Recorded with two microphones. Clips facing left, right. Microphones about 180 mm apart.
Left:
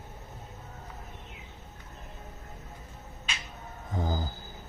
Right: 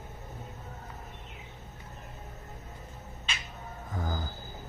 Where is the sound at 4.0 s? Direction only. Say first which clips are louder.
Left 4 dB; 25° left (ahead or behind).